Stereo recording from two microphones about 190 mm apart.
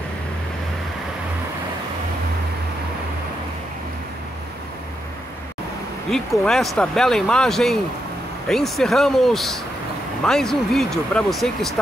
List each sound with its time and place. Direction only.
6.0 s speech: centre (ahead or behind)